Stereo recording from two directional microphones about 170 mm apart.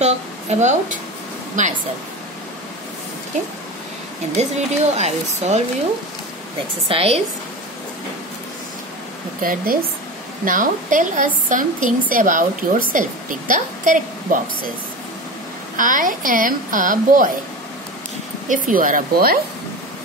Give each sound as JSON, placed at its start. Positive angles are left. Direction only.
{"t": 0.0, "sound": "a woman's voice", "side_deg": -40}
{"t": 4.4, "sound": "speech", "side_deg": -40}
{"t": 6.9, "sound": "speech", "side_deg": -35}
{"t": 9.4, "sound": "a woman's voice", "side_deg": -55}
{"t": 15.7, "sound": "a woman's voice", "side_deg": -50}
{"t": 18.5, "sound": "a woman's voice", "side_deg": -55}